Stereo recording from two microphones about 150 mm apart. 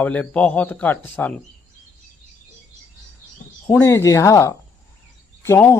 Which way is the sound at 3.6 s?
15° left (ahead or behind).